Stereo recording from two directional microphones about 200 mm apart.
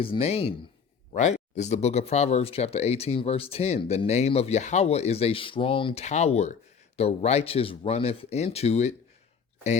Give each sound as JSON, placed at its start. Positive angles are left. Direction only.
{"t": 0.0, "sound": "speech", "side_deg": 30}